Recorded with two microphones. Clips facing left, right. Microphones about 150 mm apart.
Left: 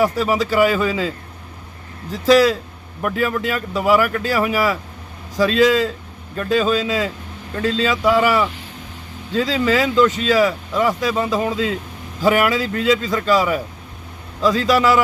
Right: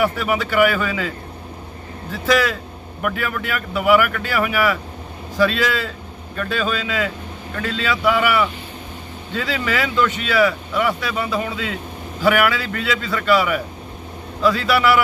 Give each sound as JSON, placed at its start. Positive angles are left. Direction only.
{"t": 0.0, "sound": "a man's voice", "side_deg": 35}
{"t": 2.1, "sound": "speech", "side_deg": 35}